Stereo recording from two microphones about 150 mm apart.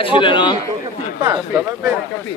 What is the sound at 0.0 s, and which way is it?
Speech, 35° left (ahead or behind).